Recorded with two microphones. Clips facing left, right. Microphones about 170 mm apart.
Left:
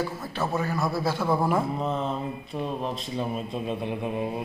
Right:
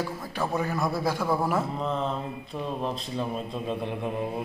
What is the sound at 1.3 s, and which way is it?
Mantra, 5° right (ahead or behind).